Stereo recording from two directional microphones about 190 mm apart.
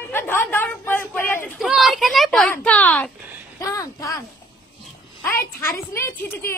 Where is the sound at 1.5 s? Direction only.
Centre (ahead or behind); by 4.2 s 15° left (ahead or behind).